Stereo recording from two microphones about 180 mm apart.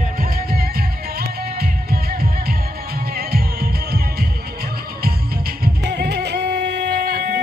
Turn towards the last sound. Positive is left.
turn(degrees=-60)  # may be behind; listen again after turning